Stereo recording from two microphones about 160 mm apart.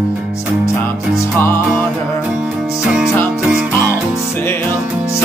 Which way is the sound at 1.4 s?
15° left (ahead or behind).